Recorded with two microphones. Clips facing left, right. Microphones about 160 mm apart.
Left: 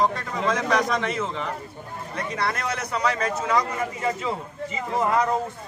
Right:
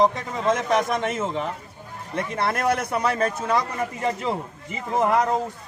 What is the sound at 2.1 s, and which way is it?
A man's voice, 55° right (ahead or behind).